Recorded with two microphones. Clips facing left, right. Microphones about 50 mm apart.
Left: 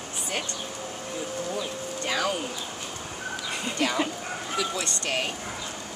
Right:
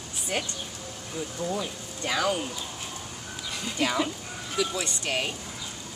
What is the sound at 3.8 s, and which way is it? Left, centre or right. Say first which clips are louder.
Speech: even; centre.